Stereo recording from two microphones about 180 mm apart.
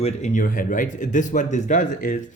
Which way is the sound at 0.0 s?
40° left (ahead or behind).